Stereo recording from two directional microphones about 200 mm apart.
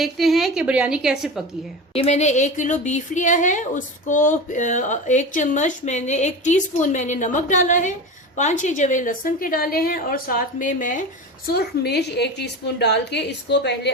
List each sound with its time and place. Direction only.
0.0 s a woman's voice: centre (ahead or behind)
1.9 s speech: 30° left (ahead or behind)
11.5 s a woman's voice: 55° left (ahead or behind)